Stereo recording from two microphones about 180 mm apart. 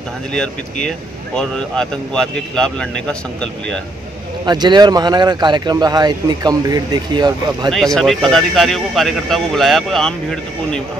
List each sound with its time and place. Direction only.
0.3 s speech: 5° left (ahead or behind)
4.5 s speech: 25° right (ahead or behind)
7.7 s speech: centre (ahead or behind)